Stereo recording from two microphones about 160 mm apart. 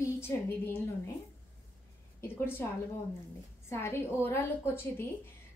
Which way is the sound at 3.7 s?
15° left (ahead or behind).